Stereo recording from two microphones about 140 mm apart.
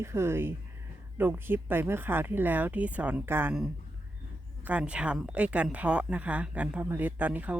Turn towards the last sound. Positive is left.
turn(degrees=-10)  # may be behind; listen again after turning